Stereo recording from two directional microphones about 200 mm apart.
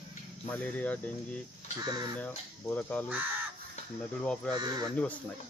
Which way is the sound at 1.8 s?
20° right (ahead or behind).